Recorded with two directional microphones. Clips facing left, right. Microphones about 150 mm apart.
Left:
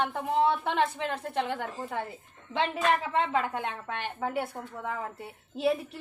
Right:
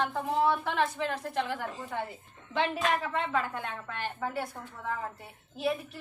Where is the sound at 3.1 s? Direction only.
20° left (ahead or behind).